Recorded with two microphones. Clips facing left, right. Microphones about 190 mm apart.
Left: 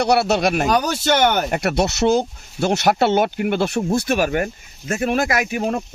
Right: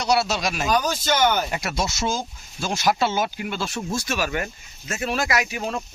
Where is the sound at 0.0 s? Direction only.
60° left (ahead or behind).